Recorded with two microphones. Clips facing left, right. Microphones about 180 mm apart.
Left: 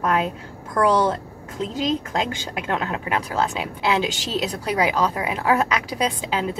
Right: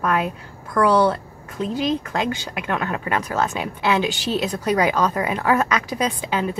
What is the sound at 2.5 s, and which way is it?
A woman's voice, 20° left (ahead or behind).